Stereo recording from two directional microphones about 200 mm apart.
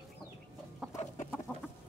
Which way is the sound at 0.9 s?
35° left (ahead or behind).